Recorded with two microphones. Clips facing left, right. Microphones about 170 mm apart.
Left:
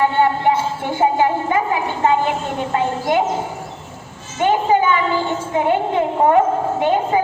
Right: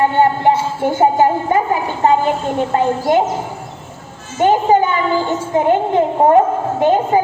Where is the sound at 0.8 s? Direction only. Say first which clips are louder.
Right 4 dB; 45° right (ahead or behind).